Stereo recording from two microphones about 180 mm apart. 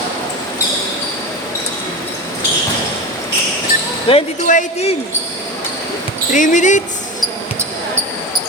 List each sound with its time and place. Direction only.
4.1 s speech: 30° left (ahead or behind)
4.4 s speech: 40° left (ahead or behind)
6.3 s speech: 45° left (ahead or behind)